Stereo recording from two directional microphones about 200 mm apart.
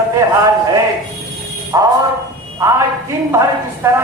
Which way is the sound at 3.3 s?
15° right (ahead or behind).